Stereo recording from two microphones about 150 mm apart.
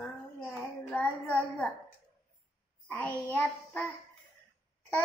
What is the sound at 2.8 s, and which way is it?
Child singing, 10° left (ahead or behind).